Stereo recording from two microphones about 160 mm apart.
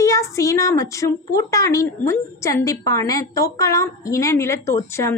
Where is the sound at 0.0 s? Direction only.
20° left (ahead or behind).